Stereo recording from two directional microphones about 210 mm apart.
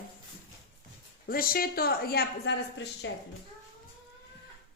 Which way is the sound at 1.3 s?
45° left (ahead or behind).